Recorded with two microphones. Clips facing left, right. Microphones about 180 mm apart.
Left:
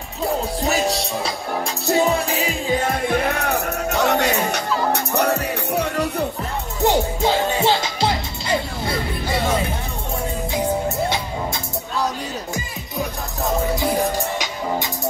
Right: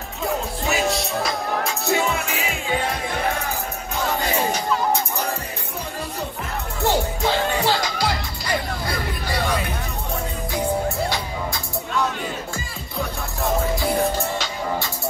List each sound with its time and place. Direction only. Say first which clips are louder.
1.9 s music: left 6 dB; 35° left (ahead or behind)
3.3 s music: left 5 dB; 70° left (ahead or behind)
6.8 s music: left 3 dB; 20° left (ahead or behind)